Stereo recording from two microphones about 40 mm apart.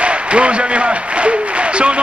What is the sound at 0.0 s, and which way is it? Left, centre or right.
Speech, right.